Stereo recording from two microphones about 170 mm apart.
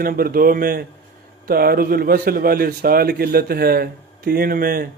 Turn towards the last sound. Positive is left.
turn(degrees=-60)  # may be behind; listen again after turning